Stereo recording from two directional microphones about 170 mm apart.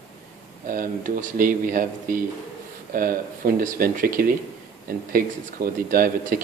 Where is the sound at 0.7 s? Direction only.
55° right (ahead or behind).